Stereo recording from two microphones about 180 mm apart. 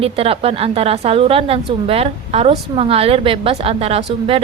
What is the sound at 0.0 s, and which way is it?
A woman's voice, 30° right (ahead or behind).